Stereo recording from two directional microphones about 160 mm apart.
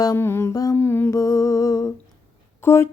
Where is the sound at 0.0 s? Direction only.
20° left (ahead or behind).